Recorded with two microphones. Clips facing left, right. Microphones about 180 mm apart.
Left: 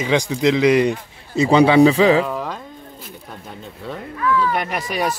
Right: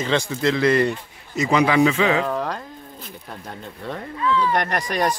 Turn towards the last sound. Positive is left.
turn(degrees=5)  # may be behind; listen again after turning